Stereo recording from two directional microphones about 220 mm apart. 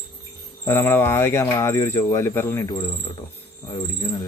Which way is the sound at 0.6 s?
10° left (ahead or behind).